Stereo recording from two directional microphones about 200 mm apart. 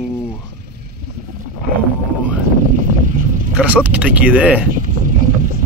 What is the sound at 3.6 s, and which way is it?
Speech, 10° right (ahead or behind).